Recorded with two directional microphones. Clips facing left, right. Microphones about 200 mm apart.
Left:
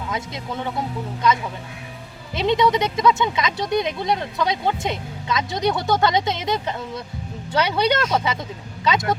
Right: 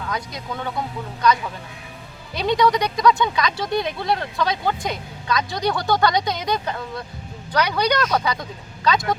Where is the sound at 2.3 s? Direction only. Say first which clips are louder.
Even; 25° left (ahead or behind).